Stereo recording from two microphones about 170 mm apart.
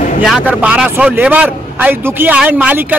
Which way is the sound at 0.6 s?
5° right (ahead or behind).